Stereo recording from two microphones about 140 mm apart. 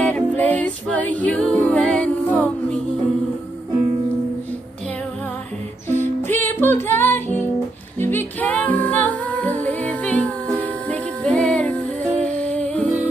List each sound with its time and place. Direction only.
0.0 s music: 10° left (ahead or behind)
5.9 s music: 15° left (ahead or behind)